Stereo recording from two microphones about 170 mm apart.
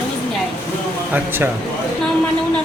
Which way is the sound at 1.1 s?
10° right (ahead or behind).